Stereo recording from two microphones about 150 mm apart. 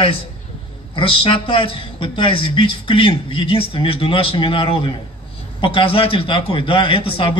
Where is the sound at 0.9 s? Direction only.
35° left (ahead or behind).